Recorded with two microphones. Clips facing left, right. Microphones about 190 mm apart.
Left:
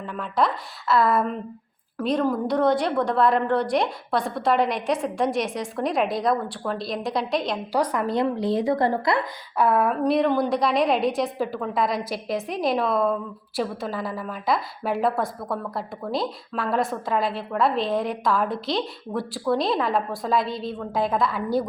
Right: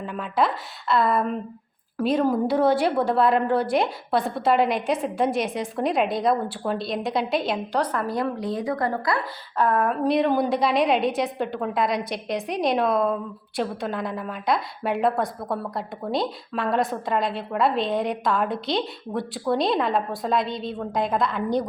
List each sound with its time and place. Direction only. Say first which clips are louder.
0.0 s a woman's voice: even; 5° right (ahead or behind)
2.0 s a woman's voice: right 2 dB; 10° right (ahead or behind)
7.7 s a sound: left 4 dB; 10° left (ahead or behind)
8.0 s a woman's voice: left 3 dB; 25° left (ahead or behind)
9.6 s a sound: left 1 dB; 10° left (ahead or behind)
10.0 s a woman's voice: even; centre (ahead or behind)